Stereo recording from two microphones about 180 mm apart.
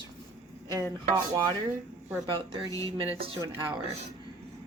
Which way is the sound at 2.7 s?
20° left (ahead or behind).